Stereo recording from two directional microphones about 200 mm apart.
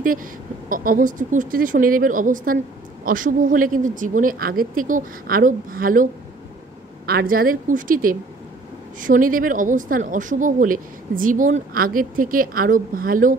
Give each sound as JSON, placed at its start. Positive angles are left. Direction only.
{"t": 0.7, "sound": "speech", "side_deg": -45}
{"t": 7.1, "sound": "speech", "side_deg": -50}